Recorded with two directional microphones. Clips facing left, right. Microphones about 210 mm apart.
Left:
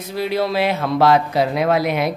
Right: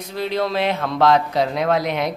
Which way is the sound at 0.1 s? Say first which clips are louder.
Left 2 dB; 10° left (ahead or behind).